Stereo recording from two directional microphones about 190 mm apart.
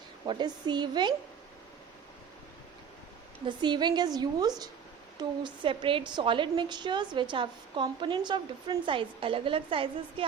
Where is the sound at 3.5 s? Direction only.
25° right (ahead or behind).